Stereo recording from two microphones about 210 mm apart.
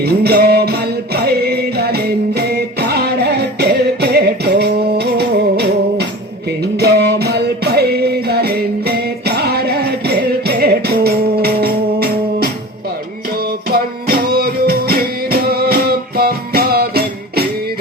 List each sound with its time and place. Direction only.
0.0 s music: 50° right (ahead or behind)
13.7 s music: 45° right (ahead or behind)